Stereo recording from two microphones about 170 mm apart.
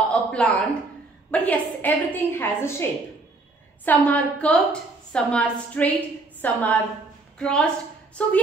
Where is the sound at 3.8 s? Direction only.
10° left (ahead or behind).